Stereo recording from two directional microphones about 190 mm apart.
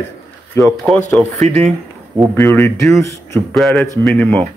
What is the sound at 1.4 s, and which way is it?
Speech, 35° right (ahead or behind).